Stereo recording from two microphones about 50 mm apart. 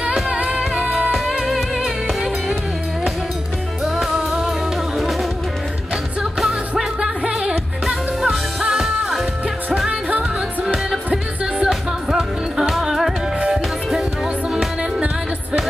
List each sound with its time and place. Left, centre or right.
0.0 s music: right
1.3 s music: centre
3.8 s music: centre
6.8 s music: centre
7.8 s music: centre
9.8 s music: right
11.6 s music: centre